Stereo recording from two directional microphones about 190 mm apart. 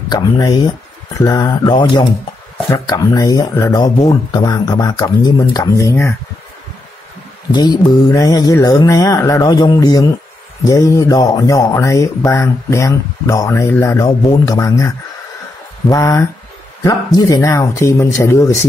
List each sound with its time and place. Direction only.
0.1 s speech: 20° left (ahead or behind)
7.5 s speech: 20° left (ahead or behind)